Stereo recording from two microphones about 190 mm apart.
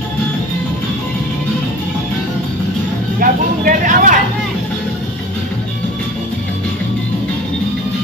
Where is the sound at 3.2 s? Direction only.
45° right (ahead or behind).